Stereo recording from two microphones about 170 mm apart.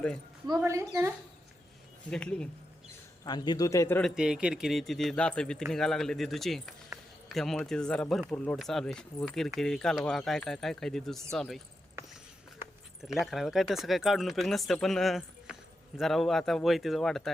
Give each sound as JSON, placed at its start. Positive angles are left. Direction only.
{"t": 0.4, "sound": "a woman's voice", "side_deg": -20}
{"t": 2.0, "sound": "speech", "side_deg": 5}
{"t": 3.2, "sound": "a man's voice", "side_deg": 25}
{"t": 4.1, "sound": "speech", "side_deg": -5}
{"t": 13.0, "sound": "speech", "side_deg": 0}